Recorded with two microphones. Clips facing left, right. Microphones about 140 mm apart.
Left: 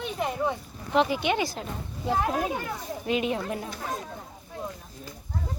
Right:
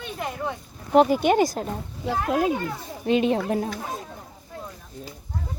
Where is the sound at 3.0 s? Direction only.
30° right (ahead or behind).